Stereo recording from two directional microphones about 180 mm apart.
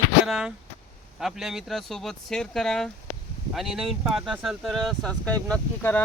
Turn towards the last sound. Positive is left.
turn(degrees=10)  # may be behind; listen again after turning